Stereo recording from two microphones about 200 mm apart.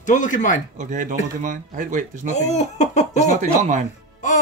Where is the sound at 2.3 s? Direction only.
35° left (ahead or behind).